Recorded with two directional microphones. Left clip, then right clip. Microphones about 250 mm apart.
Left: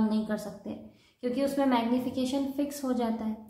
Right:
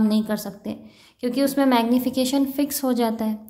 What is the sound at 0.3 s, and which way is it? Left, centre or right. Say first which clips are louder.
A woman's voice: right 6 dB; right.